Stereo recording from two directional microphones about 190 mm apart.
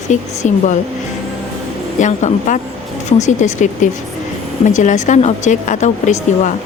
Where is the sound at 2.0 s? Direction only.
40° left (ahead or behind).